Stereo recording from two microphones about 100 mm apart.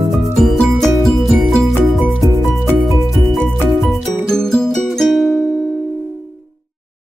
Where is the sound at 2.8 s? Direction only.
Centre (ahead or behind).